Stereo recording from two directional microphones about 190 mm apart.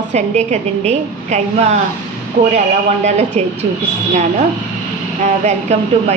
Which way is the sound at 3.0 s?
35° right (ahead or behind).